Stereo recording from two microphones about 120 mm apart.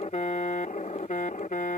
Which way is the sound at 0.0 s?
65° left (ahead or behind).